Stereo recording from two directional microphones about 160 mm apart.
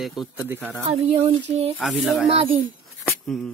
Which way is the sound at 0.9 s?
40° right (ahead or behind).